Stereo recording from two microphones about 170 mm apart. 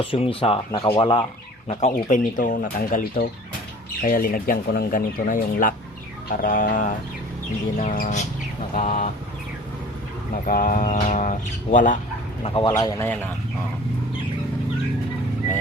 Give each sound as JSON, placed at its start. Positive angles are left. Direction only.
{"t": 0.0, "sound": "speech", "side_deg": 30}
{"t": 1.6, "sound": "speech", "side_deg": 40}
{"t": 10.4, "sound": "speech", "side_deg": 50}
{"t": 12.4, "sound": "speech", "side_deg": 35}
{"t": 13.0, "sound": "speech", "side_deg": 10}